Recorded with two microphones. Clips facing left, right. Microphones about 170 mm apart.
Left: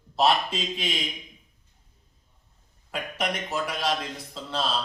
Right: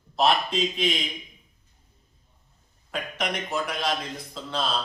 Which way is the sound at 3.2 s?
5° left (ahead or behind).